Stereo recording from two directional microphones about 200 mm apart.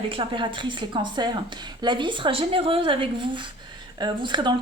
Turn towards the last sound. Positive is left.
turn(degrees=-25)  # may be behind; listen again after turning